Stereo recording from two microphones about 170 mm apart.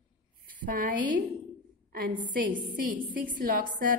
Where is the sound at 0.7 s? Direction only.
55° right (ahead or behind).